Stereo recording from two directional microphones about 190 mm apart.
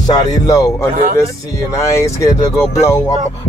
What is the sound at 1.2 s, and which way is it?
Music, 15° left (ahead or behind).